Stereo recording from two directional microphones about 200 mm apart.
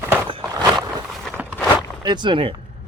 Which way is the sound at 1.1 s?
Centre (ahead or behind).